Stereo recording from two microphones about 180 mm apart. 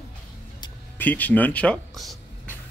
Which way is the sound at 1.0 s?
10° left (ahead or behind).